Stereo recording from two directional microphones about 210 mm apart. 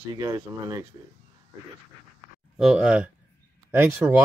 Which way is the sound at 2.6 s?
Centre (ahead or behind).